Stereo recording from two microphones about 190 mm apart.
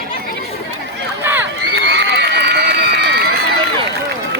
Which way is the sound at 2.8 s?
55° right (ahead or behind).